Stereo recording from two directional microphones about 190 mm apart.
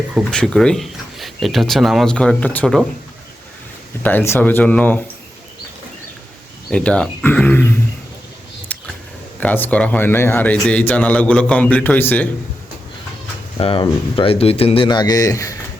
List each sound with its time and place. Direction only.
0.1 s speech: centre (ahead or behind)
4.0 s a man's voice: 10° left (ahead or behind)
6.7 s a man's voice: 5° left (ahead or behind)
8.7 s a sound: 5° left (ahead or behind)
9.4 s a man's voice: 10° left (ahead or behind)
13.6 s speech: 30° left (ahead or behind)